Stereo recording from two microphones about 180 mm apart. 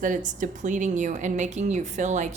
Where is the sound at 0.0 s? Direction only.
45° right (ahead or behind).